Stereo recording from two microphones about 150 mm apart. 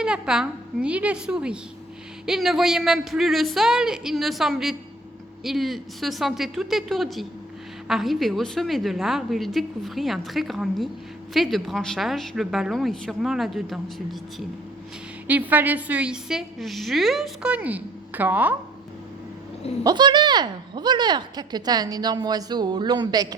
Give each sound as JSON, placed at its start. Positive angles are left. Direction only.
{"t": 0.0, "sound": "a woman's voice", "side_deg": -5}
{"t": 15.3, "sound": "a woman's voice", "side_deg": -10}
{"t": 19.8, "sound": "speech", "side_deg": -30}